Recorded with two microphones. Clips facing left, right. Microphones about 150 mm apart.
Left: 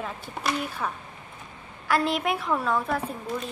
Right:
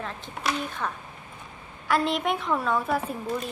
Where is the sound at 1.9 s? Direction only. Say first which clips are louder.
Even; centre (ahead or behind).